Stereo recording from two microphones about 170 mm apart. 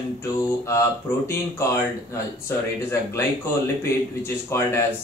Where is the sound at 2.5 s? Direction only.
15° left (ahead or behind).